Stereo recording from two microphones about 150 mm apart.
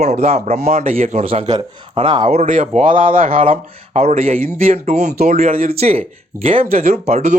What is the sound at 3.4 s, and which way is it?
Speech, 45° right (ahead or behind).